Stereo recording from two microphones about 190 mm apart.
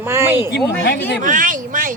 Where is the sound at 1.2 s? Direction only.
45° right (ahead or behind).